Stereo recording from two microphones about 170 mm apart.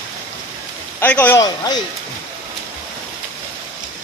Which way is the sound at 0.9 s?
10° left (ahead or behind).